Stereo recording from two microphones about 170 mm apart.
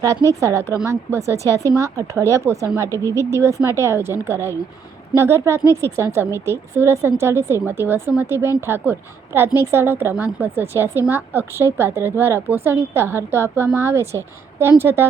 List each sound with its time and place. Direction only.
0.0 s a woman's voice: 20° right (ahead or behind)